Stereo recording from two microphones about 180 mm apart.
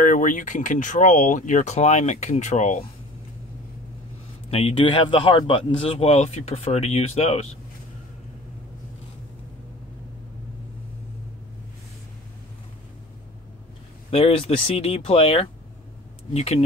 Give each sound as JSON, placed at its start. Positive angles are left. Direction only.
{"t": 0.0, "sound": "speech", "side_deg": 45}
{"t": 4.5, "sound": "speech", "side_deg": 35}
{"t": 14.1, "sound": "speech", "side_deg": 30}